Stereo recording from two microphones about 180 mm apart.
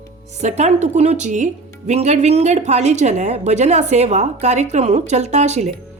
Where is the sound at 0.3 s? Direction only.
40° right (ahead or behind).